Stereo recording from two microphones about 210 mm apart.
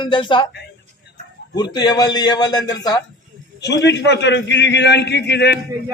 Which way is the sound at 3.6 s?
55° left (ahead or behind).